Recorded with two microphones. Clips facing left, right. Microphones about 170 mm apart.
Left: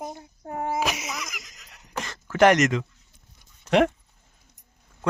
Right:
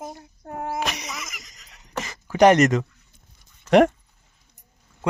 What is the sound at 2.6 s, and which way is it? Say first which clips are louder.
Speech: right 4 dB; 40° right (ahead or behind).